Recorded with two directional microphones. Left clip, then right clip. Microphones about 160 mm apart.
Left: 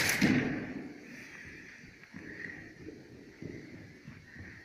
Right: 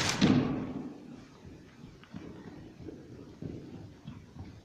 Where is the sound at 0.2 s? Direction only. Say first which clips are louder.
Right 5 dB; 10° right (ahead or behind).